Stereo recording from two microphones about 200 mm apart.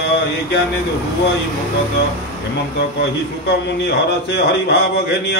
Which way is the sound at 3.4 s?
55° left (ahead or behind).